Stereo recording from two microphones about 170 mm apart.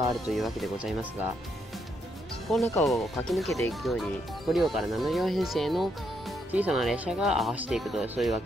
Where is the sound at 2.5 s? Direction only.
Centre (ahead or behind).